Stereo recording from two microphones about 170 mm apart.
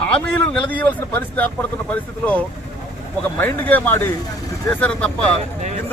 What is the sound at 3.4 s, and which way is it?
A man's voice, 10° left (ahead or behind).